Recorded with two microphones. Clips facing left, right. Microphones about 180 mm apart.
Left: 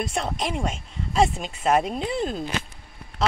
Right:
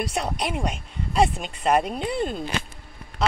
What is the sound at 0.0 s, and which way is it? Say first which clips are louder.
Speech: even; centre (ahead or behind).